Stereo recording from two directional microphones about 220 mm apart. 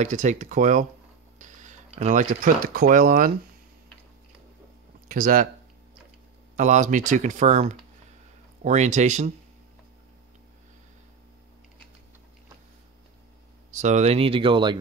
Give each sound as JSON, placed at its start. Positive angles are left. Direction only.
{"t": 0.0, "sound": "speech", "side_deg": -35}
{"t": 5.0, "sound": "speech", "side_deg": -40}
{"t": 6.5, "sound": "speech", "side_deg": -35}
{"t": 13.7, "sound": "speech", "side_deg": -30}